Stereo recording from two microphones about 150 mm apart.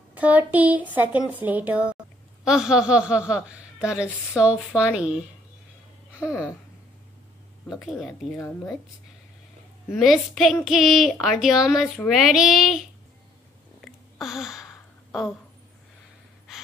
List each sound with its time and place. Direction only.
0.1 s a woman's voice: 10° right (ahead or behind)
6.1 s a sound: 20° left (ahead or behind)
7.8 s a woman's voice: centre (ahead or behind)
8.4 s speech: 20° left (ahead or behind)
9.9 s a woman's voice: centre (ahead or behind)
13.7 s a sound: centre (ahead or behind)